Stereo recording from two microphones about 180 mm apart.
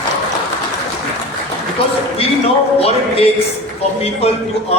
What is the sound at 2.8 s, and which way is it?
A man's voice, 35° left (ahead or behind).